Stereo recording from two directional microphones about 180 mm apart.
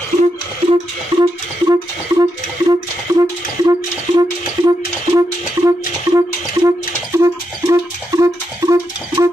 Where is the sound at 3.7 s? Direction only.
20° right (ahead or behind).